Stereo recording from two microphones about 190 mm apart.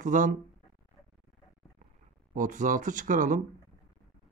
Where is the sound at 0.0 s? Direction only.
45° right (ahead or behind).